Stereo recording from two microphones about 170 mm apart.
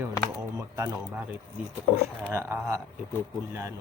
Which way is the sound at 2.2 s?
15° right (ahead or behind).